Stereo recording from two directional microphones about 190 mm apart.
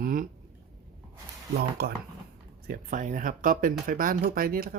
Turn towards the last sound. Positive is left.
turn(degrees=-50)  # may be behind; listen again after turning